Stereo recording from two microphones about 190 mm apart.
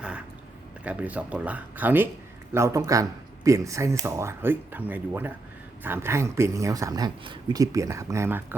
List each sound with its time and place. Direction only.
0.9 s speech: 10° right (ahead or behind)